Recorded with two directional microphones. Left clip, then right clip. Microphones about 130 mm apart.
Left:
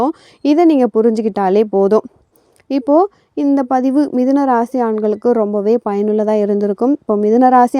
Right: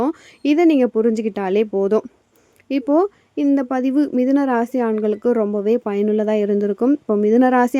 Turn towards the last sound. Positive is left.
turn(degrees=50)  # may be behind; listen again after turning